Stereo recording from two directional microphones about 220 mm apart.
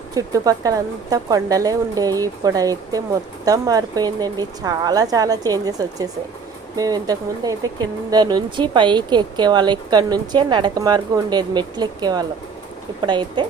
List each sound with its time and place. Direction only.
0.1 s speech: 15° right (ahead or behind)